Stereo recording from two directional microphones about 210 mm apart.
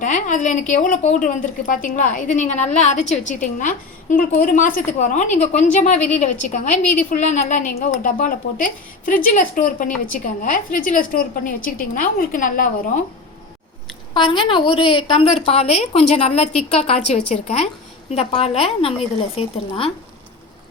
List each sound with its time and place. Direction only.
0.0 s a woman's voice: 35° left (ahead or behind)
14.1 s a woman's voice: 25° left (ahead or behind)